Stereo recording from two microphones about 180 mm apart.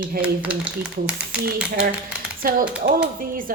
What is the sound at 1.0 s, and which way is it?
Speech, 5° right (ahead or behind).